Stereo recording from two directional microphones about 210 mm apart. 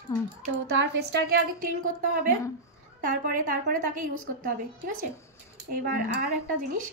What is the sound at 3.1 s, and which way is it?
A woman's voice, 40° right (ahead or behind).